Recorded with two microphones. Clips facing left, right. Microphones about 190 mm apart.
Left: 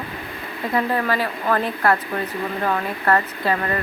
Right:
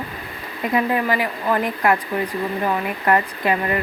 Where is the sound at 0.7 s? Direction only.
15° right (ahead or behind).